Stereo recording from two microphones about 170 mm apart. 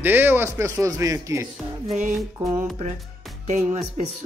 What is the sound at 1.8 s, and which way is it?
Music, 45° right (ahead or behind).